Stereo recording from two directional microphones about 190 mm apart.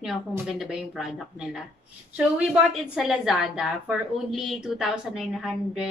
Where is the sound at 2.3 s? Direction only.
5° right (ahead or behind).